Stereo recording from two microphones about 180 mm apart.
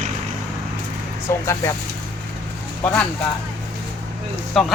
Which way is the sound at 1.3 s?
15° left (ahead or behind).